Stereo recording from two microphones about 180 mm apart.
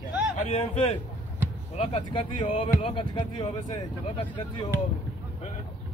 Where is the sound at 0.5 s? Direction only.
35° left (ahead or behind).